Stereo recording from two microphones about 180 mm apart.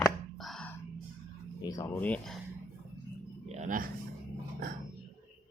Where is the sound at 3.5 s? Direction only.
45° right (ahead or behind).